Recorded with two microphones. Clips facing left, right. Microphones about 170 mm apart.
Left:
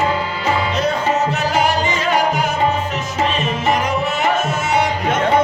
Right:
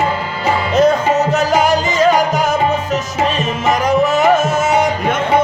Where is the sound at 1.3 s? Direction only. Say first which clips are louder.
Right 4 dB; 45° right (ahead or behind).